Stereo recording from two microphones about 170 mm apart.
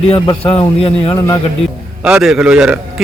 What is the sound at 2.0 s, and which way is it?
Speech, 5° right (ahead or behind).